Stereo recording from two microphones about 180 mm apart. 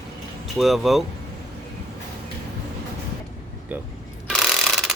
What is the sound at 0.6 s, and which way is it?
Speech, centre (ahead or behind).